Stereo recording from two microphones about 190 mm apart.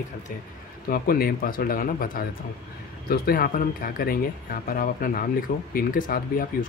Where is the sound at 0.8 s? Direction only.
50° left (ahead or behind).